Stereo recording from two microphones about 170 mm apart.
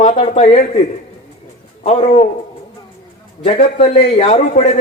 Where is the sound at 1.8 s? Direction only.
35° left (ahead or behind).